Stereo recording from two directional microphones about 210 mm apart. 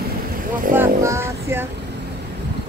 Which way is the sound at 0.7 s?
15° right (ahead or behind).